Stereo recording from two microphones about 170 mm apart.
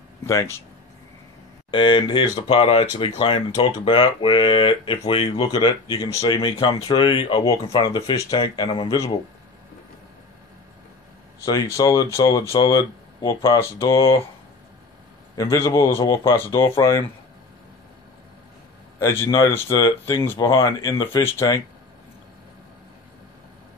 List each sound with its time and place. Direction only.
0.3 s speech: 20° left (ahead or behind)
1.7 s speech: 30° left (ahead or behind)
11.4 s speech: 20° left (ahead or behind)
15.3 s speech: 15° left (ahead or behind)
18.9 s speech: 15° left (ahead or behind)